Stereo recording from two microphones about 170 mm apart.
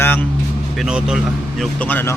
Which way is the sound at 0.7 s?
5° right (ahead or behind).